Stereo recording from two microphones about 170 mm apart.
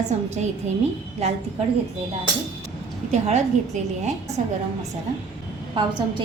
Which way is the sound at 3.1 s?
40° right (ahead or behind).